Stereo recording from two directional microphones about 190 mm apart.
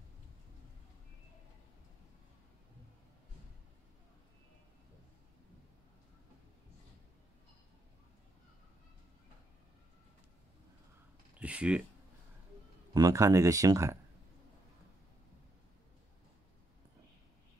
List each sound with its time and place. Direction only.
11.3 s speech: 5° right (ahead or behind)
12.9 s speech: 20° right (ahead or behind)